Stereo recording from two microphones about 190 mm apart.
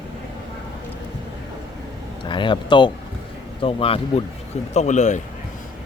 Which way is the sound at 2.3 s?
25° left (ahead or behind).